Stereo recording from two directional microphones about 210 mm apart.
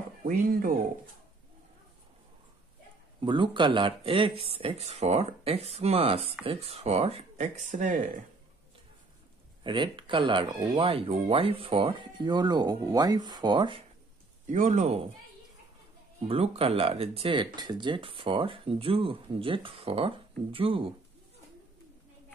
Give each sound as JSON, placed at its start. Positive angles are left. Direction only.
{"t": 0.3, "sound": "speech", "side_deg": -40}
{"t": 3.2, "sound": "speech", "side_deg": -20}
{"t": 9.6, "sound": "speech", "side_deg": -20}
{"t": 14.4, "sound": "speech", "side_deg": -35}
{"t": 16.2, "sound": "speech", "side_deg": -30}